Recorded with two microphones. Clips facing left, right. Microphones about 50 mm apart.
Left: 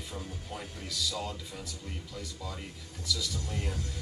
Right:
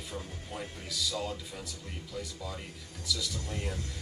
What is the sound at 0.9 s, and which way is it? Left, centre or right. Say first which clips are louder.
Speech: right 1 dB; centre.